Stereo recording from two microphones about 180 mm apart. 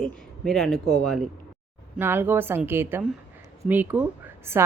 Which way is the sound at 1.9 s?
10° right (ahead or behind).